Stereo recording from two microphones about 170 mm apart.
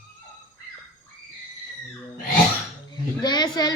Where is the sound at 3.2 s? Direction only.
25° left (ahead or behind).